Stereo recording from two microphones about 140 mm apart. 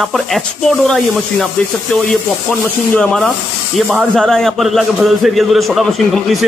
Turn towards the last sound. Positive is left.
turn(degrees=0)  # may be behind; listen again after turning